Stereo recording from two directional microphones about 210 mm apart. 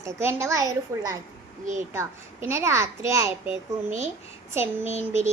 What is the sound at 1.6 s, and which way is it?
Speech, 35° right (ahead or behind).